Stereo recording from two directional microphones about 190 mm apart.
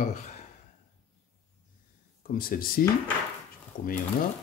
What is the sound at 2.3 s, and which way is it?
Speech, 50° left (ahead or behind).